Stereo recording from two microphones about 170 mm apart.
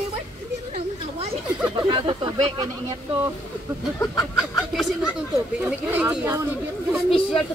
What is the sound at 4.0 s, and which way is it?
Speech, 20° left (ahead or behind).